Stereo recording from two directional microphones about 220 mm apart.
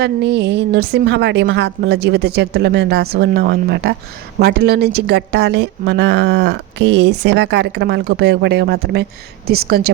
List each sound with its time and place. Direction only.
0.0 s a woman's voice: 50° right (ahead or behind)